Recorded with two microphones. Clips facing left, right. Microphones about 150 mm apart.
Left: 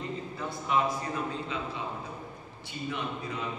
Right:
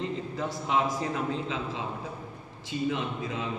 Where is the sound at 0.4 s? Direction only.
90° right.